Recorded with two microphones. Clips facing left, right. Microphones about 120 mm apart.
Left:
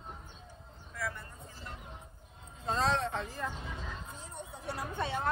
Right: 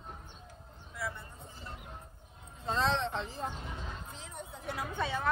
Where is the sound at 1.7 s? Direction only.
25° left (ahead or behind).